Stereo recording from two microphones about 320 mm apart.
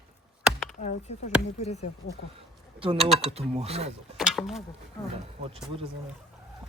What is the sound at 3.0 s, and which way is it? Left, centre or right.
Speech, centre.